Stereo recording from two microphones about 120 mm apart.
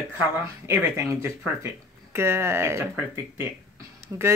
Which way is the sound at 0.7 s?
20° right (ahead or behind).